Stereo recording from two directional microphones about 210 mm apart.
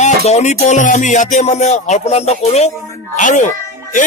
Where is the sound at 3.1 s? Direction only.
35° left (ahead or behind).